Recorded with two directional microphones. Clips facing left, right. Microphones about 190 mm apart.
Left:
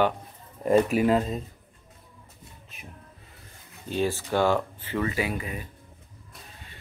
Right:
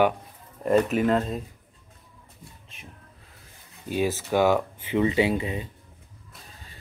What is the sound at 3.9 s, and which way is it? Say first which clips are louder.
Speech: right 1 dB; 10° right (ahead or behind).